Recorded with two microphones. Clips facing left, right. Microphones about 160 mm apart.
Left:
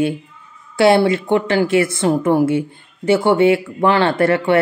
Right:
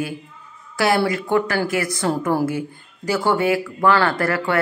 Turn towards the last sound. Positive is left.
turn(degrees=25)  # may be behind; listen again after turning